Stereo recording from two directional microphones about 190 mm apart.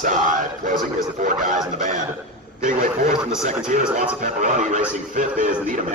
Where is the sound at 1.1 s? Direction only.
40° right (ahead or behind).